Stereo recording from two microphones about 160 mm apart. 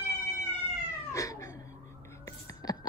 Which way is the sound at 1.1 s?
20° left (ahead or behind).